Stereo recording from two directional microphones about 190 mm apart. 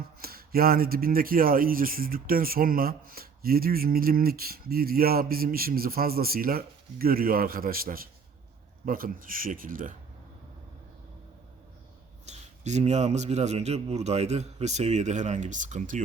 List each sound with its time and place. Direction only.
0.2 s speech: 50° right (ahead or behind)
12.3 s a man's voice: 35° right (ahead or behind)